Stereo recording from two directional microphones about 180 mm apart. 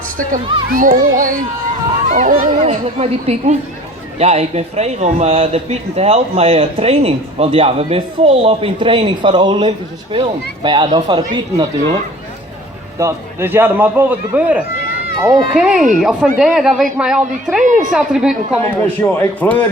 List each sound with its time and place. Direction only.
0.7 s a child's voice: 50° right (ahead or behind); by 11.9 s 25° right (ahead or behind)
13.0 s a man's voice: 15° right (ahead or behind)
17.6 s a child's voice: 45° right (ahead or behind)
17.9 s a woman's voice: 5° right (ahead or behind)
18.7 s a man's voice: 10° left (ahead or behind)